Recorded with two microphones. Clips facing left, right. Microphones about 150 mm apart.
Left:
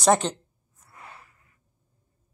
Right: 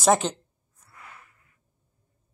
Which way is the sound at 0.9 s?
30° left (ahead or behind).